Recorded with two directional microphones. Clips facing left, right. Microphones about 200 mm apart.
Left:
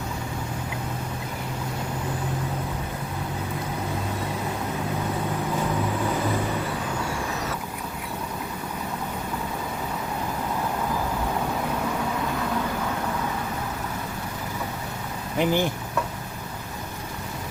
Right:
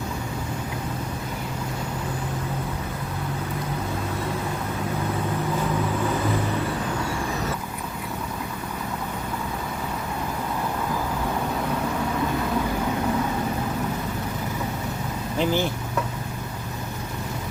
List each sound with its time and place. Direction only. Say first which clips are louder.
15.4 s speech: left 1 dB; 15° left (ahead or behind)